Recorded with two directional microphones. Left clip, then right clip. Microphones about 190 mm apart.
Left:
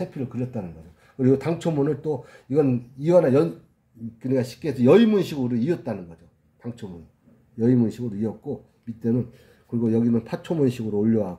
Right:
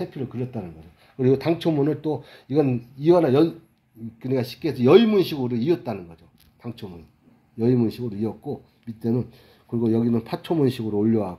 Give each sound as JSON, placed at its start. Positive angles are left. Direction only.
{"t": 0.0, "sound": "speech", "side_deg": -10}